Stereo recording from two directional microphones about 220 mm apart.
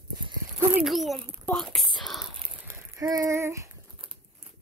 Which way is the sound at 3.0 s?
15° right (ahead or behind).